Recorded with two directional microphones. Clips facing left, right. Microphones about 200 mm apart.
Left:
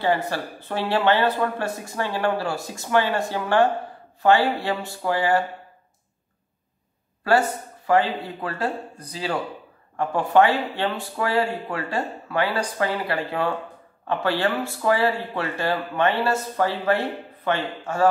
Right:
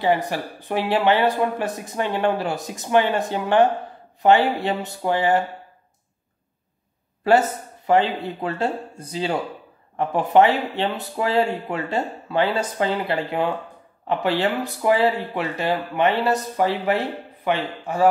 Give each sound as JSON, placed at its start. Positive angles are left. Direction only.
{"t": 0.0, "sound": "speech", "side_deg": -15}
{"t": 7.2, "sound": "speech", "side_deg": -20}